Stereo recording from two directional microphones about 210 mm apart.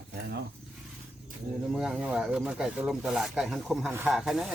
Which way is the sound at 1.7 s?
5° right (ahead or behind).